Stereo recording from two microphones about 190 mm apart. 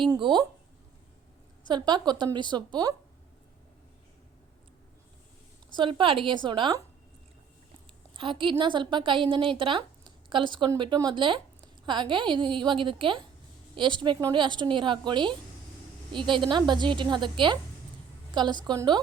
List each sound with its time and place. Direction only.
0.0 s a woman's voice: 25° right (ahead or behind)
1.6 s a woman's voice: 25° right (ahead or behind)
5.7 s a woman's voice: 25° right (ahead or behind)
8.1 s a woman's voice: 25° right (ahead or behind)
18.6 s a woman's voice: 20° right (ahead or behind)